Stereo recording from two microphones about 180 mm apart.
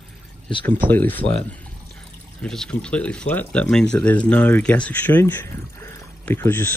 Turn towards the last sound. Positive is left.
turn(degrees=10)  # may be behind; listen again after turning